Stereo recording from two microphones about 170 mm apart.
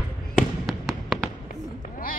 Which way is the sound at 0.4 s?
Centre (ahead or behind).